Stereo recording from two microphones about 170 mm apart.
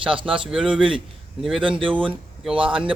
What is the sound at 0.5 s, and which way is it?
Speech, centre (ahead or behind).